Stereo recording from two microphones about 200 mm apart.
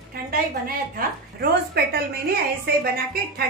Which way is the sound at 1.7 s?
50° right (ahead or behind).